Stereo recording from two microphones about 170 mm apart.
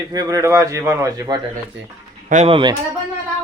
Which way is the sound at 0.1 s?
20° right (ahead or behind).